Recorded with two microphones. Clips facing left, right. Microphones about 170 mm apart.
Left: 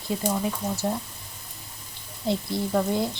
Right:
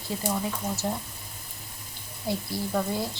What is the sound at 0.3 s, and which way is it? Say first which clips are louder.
Speech: left 2 dB; 10° left (ahead or behind).